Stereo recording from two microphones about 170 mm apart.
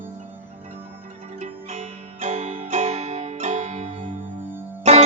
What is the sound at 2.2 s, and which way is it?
Music, 40° right (ahead or behind).